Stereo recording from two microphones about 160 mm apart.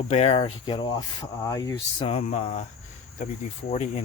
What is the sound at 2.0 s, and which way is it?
Speech, 40° left (ahead or behind).